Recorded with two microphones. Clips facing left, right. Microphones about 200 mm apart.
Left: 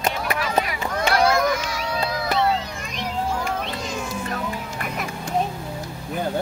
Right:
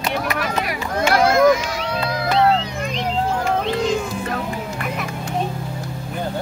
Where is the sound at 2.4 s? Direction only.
55° right (ahead or behind).